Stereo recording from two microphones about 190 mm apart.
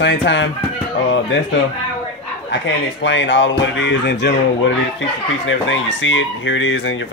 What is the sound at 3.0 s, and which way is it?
Speech, 75° left (ahead or behind).